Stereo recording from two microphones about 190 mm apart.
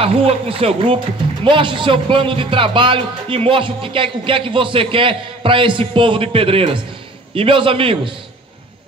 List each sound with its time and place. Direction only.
0.0 s speech: 30° right (ahead or behind)